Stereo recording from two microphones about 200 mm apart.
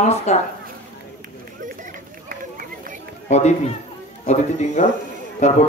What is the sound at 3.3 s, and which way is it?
Speech, 35° left (ahead or behind).